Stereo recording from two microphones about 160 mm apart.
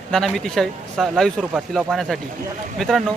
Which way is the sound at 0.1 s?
Centre (ahead or behind).